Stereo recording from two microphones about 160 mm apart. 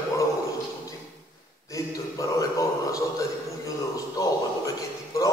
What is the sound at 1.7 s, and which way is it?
Speech, 20° left (ahead or behind).